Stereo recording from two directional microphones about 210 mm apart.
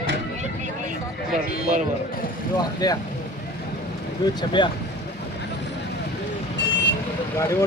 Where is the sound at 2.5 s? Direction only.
20° left (ahead or behind).